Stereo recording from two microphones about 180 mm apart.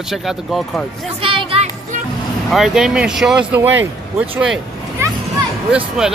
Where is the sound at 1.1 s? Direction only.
30° right (ahead or behind).